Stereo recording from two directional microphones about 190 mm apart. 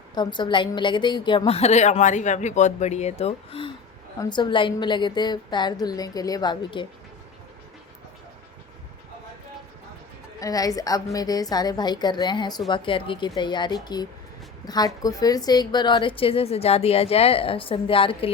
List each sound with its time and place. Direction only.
0.1 s a woman's voice: 25° left (ahead or behind)
10.4 s a woman's voice: 20° left (ahead or behind)